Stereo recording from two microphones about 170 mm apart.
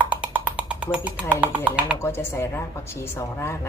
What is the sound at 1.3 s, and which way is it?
Speech, 10° right (ahead or behind).